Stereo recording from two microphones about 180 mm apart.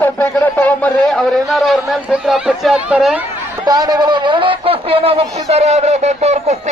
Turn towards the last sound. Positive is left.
turn(degrees=-40)  # may be behind; listen again after turning